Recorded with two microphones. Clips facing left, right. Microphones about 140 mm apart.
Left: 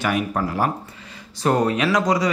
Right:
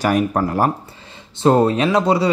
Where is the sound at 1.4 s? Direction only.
25° right (ahead or behind).